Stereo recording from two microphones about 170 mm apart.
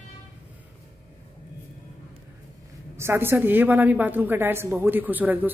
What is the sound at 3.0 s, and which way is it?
A woman's voice, 15° right (ahead or behind).